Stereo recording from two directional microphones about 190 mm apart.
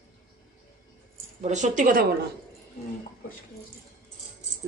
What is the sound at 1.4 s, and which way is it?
Speech, 40° right (ahead or behind).